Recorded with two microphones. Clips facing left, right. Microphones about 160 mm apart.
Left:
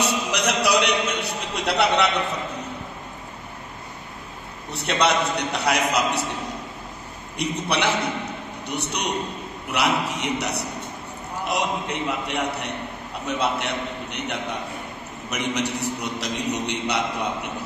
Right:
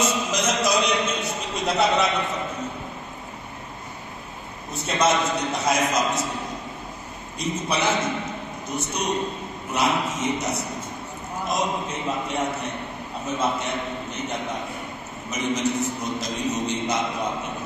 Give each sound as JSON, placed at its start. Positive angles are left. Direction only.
{"t": 0.0, "sound": "a sound", "side_deg": 70}
{"t": 0.7, "sound": "a man's voice", "side_deg": 70}
{"t": 4.7, "sound": "a man's voice", "side_deg": 70}
{"t": 7.3, "sound": "a man's voice", "side_deg": 70}